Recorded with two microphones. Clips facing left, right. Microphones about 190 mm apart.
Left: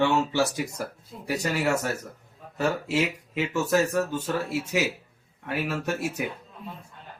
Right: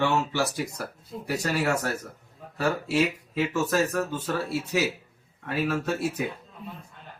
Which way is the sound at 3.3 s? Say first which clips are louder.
Left 1 dB; 20° left (ahead or behind).